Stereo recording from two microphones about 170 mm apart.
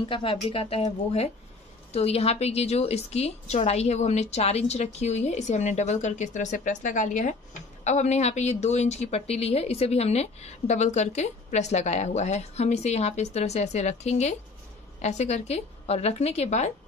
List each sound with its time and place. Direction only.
0.0 s a woman's voice: 30° left (ahead or behind)